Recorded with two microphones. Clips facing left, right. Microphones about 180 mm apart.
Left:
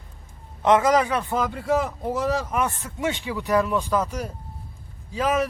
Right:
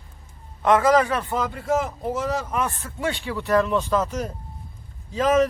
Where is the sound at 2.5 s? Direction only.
15° left (ahead or behind).